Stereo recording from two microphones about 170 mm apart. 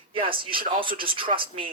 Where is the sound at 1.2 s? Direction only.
30° right (ahead or behind).